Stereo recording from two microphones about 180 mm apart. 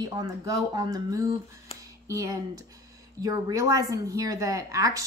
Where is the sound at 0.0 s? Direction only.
20° right (ahead or behind).